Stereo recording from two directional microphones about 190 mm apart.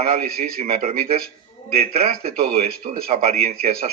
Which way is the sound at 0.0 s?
50° right (ahead or behind).